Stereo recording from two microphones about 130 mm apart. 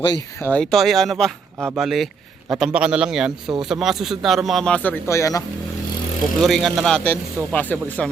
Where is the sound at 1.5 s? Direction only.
15° right (ahead or behind).